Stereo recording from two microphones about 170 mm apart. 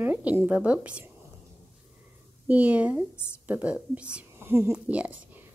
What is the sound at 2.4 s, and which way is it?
A woman's voice, 10° right (ahead or behind).